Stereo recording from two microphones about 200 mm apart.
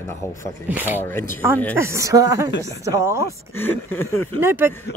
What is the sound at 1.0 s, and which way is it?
Speech, 10° left (ahead or behind).